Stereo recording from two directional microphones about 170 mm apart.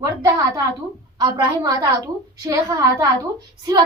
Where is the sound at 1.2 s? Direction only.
25° right (ahead or behind).